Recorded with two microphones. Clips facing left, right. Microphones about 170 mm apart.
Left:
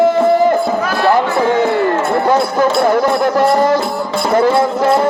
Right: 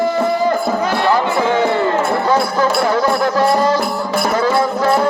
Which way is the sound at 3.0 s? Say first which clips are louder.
Left 2 dB; 20° left (ahead or behind).